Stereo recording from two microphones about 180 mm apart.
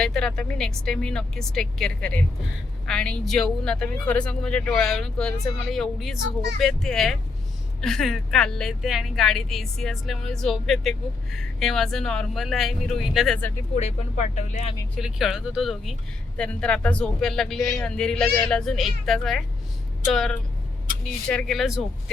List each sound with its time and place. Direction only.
0.0 s speech: 5° left (ahead or behind)
13.7 s speech: 40° left (ahead or behind)
14.9 s speech: centre (ahead or behind)